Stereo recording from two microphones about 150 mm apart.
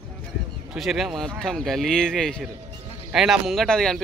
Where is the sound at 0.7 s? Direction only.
Centre (ahead or behind).